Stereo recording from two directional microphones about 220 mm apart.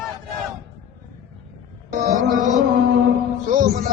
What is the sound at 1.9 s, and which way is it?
Music, 35° right (ahead or behind).